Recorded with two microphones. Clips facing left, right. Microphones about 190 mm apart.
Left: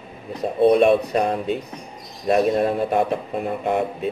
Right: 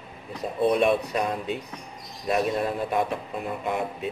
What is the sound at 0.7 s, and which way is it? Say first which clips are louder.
Speech: left 6 dB; 50° left (ahead or behind).